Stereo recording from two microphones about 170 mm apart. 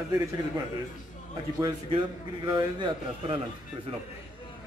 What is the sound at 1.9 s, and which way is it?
A man's voice, 30° right (ahead or behind).